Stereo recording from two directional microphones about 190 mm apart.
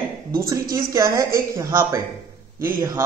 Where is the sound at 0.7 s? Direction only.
15° right (ahead or behind).